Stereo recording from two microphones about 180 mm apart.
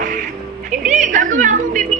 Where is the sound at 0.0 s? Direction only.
45° right (ahead or behind).